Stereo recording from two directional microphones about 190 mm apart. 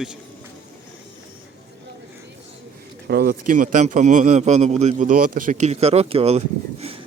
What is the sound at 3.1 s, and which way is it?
A man's voice, 55° right (ahead or behind).